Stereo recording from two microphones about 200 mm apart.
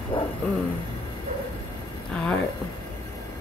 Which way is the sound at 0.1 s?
25° left (ahead or behind).